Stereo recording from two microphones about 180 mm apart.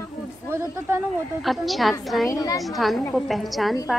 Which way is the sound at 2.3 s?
20° left (ahead or behind).